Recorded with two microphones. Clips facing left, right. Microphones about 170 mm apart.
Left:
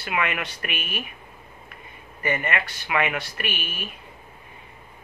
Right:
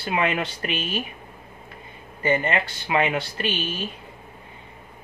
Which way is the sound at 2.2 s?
30° right (ahead or behind).